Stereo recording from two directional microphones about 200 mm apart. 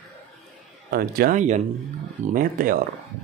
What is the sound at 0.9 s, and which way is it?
Speech, 50° right (ahead or behind).